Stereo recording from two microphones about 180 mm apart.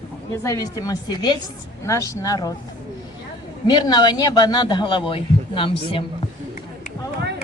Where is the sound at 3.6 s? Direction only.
25° left (ahead or behind).